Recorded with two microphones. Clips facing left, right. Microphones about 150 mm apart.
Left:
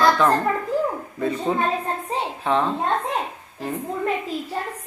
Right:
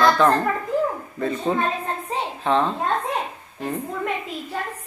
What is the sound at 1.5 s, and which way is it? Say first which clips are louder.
Speech: right 1 dB; 10° left (ahead or behind).